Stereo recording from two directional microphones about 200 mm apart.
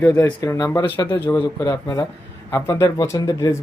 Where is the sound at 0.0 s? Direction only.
10° left (ahead or behind).